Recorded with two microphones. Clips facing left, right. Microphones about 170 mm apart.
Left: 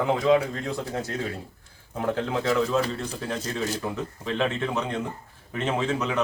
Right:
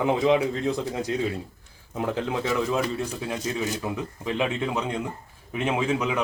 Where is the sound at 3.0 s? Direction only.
10° right (ahead or behind).